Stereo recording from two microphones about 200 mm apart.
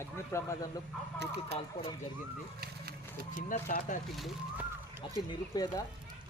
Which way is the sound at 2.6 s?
50° right (ahead or behind).